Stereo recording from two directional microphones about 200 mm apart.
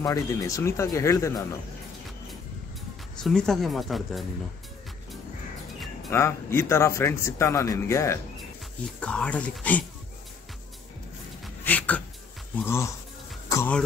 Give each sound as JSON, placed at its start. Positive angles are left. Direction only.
{"t": 0.0, "sound": "a man's voice", "side_deg": 15}
{"t": 3.2, "sound": "speech", "side_deg": 0}
{"t": 6.0, "sound": "a man's voice", "side_deg": 15}
{"t": 11.4, "sound": "a sound", "side_deg": 10}
{"t": 12.6, "sound": "a man's voice", "side_deg": 15}
{"t": 13.5, "sound": "music", "side_deg": 10}